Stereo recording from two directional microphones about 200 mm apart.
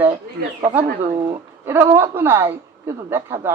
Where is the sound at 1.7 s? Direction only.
10° right (ahead or behind).